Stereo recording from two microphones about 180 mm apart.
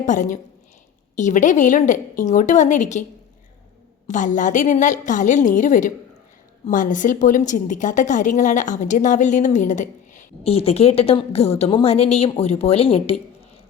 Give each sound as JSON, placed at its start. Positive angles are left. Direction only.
{"t": 0.0, "sound": "a woman's voice", "side_deg": 45}
{"t": 4.0, "sound": "a woman's voice", "side_deg": 45}